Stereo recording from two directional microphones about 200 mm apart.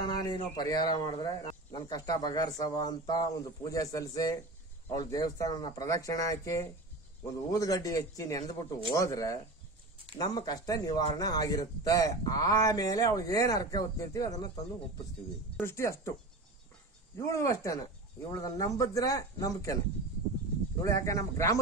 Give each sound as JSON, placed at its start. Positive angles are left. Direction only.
{"t": 0.0, "sound": "a sound", "side_deg": 20}
{"t": 0.6, "sound": "a man's voice", "side_deg": 20}
{"t": 17.2, "sound": "a man's voice", "side_deg": 15}
{"t": 20.8, "sound": "a man's voice", "side_deg": 15}